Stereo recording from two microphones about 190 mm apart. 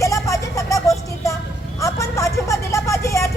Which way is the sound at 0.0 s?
15° left (ahead or behind).